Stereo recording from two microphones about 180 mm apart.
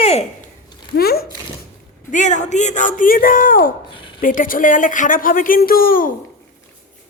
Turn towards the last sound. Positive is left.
turn(degrees=50)  # may be behind; listen again after turning